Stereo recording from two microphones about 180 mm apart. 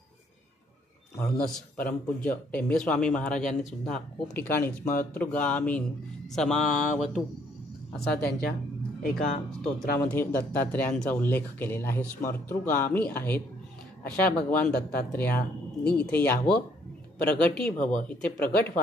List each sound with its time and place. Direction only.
1.2 s speech: 10° left (ahead or behind)
6.3 s mantra: 5° left (ahead or behind)
7.9 s speech: 5° left (ahead or behind)
9.0 s speech: 50° left (ahead or behind)
9.9 s speech: 10° left (ahead or behind)